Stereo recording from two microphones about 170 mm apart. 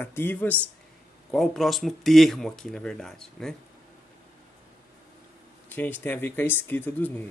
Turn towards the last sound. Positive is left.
turn(degrees=10)  # may be behind; listen again after turning